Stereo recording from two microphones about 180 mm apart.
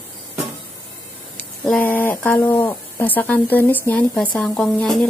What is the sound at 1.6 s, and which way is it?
Speech, 10° left (ahead or behind).